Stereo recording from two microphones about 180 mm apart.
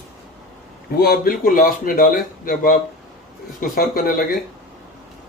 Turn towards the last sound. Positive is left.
turn(degrees=55)  # may be behind; listen again after turning